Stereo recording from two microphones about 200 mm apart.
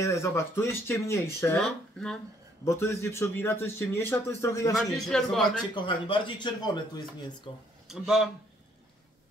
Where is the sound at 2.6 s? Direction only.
15° left (ahead or behind).